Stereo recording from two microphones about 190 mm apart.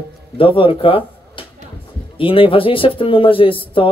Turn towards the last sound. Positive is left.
turn(degrees=30)  # may be behind; listen again after turning